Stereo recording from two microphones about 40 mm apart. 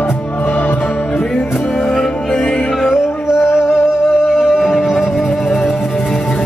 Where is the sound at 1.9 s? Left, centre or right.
Centre.